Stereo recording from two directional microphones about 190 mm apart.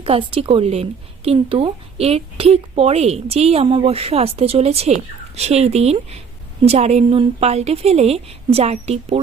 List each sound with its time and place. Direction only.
0.0 s a woman's voice: 30° right (ahead or behind)